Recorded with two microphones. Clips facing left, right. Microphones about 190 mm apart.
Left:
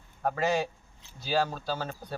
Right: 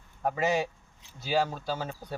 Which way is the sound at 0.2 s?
15° right (ahead or behind).